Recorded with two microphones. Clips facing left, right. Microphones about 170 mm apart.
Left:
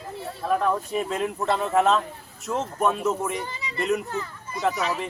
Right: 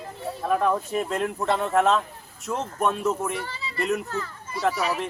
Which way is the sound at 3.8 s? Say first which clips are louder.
Left 1 dB; centre (ahead or behind).